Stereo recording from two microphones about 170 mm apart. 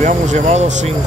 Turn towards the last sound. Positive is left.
turn(degrees=-45)  # may be behind; listen again after turning